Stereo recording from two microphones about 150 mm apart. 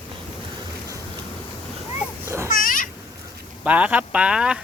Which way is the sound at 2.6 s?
65° left (ahead or behind).